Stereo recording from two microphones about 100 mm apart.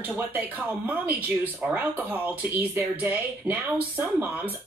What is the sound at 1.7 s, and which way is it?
Speech, 15° right (ahead or behind).